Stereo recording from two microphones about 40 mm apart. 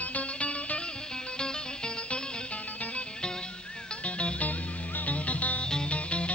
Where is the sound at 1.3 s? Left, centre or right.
Left.